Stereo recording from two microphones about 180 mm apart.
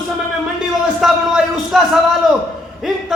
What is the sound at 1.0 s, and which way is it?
Speech, centre (ahead or behind).